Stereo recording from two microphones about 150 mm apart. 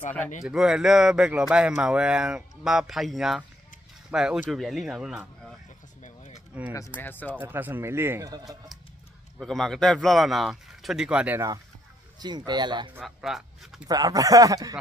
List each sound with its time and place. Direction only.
0.4 s speech: 5° right (ahead or behind)
6.0 s a sound: 55° left (ahead or behind)
7.0 s speech: 15° left (ahead or behind)
7.3 s speech: 15° right (ahead or behind)
9.4 s speech: centre (ahead or behind)
12.2 s speech: 30° right (ahead or behind)
13.0 s speech: centre (ahead or behind)
13.8 s speech: 25° right (ahead or behind)